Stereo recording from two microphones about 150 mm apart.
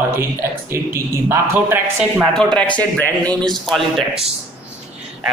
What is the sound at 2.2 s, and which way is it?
A man's voice, 5° left (ahead or behind).